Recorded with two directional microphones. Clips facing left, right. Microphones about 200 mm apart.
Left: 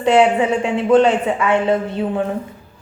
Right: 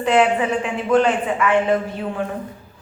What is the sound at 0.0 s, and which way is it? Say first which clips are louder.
A woman's voice: left 3 dB; 30° left (ahead or behind).